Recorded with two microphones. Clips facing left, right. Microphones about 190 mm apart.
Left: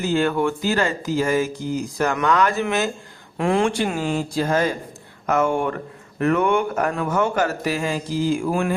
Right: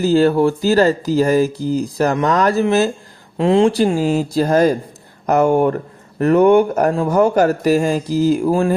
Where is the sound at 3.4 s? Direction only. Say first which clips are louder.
Right 7 dB; 25° right (ahead or behind).